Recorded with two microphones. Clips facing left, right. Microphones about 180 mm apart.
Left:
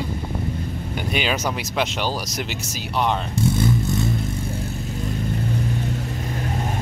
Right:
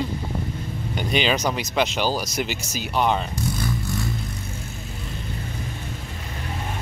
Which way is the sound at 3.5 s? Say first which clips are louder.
Left 6 dB; 25° left (ahead or behind).